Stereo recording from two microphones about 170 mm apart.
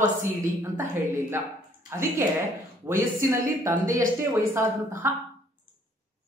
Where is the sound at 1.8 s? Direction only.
15° right (ahead or behind).